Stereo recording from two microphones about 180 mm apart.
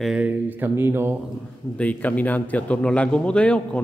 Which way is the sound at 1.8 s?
10° left (ahead or behind).